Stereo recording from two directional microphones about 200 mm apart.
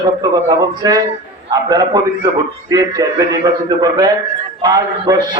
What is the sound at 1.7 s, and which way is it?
A man's voice, 20° right (ahead or behind).